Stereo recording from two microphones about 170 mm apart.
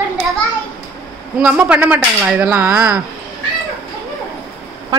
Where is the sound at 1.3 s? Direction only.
10° right (ahead or behind).